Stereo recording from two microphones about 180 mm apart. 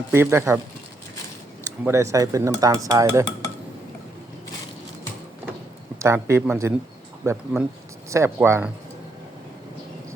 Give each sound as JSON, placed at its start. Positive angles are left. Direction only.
{"t": 0.1, "sound": "speech", "side_deg": -15}
{"t": 1.8, "sound": "dishes", "side_deg": -15}
{"t": 6.0, "sound": "speech", "side_deg": -15}